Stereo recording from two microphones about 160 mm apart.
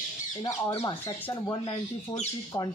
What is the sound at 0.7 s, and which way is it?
Speech, 30° left (ahead or behind).